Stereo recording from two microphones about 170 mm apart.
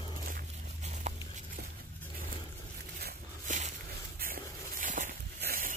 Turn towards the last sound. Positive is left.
turn(degrees=-60)  # may be behind; listen again after turning